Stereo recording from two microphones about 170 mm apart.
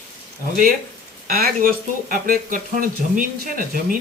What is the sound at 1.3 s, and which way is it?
Speech, 55° right (ahead or behind).